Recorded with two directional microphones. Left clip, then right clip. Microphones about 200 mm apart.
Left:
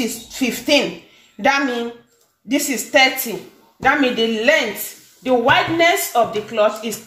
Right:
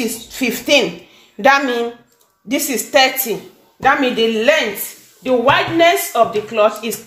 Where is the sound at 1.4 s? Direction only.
35° right (ahead or behind).